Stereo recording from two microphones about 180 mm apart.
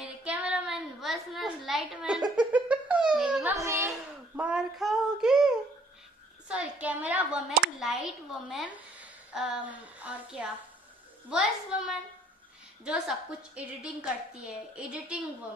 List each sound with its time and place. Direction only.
0.0 s child singing: 5° right (ahead or behind)
2.3 s laughter: 5° right (ahead or behind)
3.5 s a sound: 15° right (ahead or behind)
3.9 s child singing: 5° right (ahead or behind)
6.5 s a woman's voice: 10° right (ahead or behind)